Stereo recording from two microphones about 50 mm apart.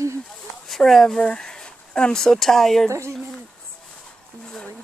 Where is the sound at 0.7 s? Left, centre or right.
Centre.